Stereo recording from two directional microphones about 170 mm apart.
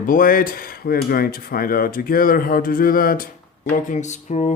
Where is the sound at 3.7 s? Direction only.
45° left (ahead or behind).